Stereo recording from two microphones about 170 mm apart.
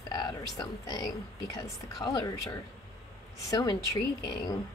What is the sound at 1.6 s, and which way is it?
Speech, 20° left (ahead or behind).